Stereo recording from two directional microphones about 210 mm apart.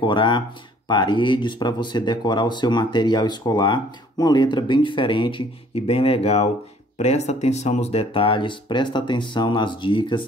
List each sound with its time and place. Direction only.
0.0 s speech: 25° left (ahead or behind)